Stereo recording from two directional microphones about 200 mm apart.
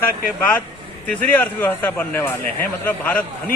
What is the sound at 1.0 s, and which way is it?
A man's voice, 10° left (ahead or behind).